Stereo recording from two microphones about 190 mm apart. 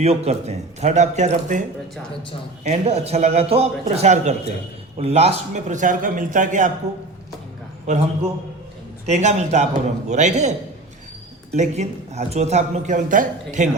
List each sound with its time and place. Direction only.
0.0 s speech: 35° right (ahead or behind)
2.6 s speech: 35° right (ahead or behind)
7.9 s speech: 35° right (ahead or behind)
9.0 s speech: 35° right (ahead or behind)
11.5 s speech: 35° right (ahead or behind)